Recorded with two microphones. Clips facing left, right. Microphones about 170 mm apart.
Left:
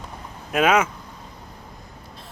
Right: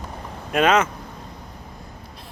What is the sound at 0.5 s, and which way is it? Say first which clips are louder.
Speech: right 1 dB; 10° left (ahead or behind).